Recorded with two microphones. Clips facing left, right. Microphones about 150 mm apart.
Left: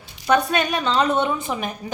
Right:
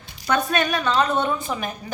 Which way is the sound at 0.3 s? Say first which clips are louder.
Left 2 dB; 15° left (ahead or behind).